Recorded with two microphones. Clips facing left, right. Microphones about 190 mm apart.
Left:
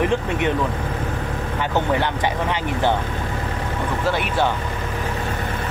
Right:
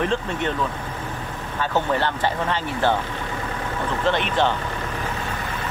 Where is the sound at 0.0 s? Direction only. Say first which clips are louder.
Left 3 dB; 15° left (ahead or behind).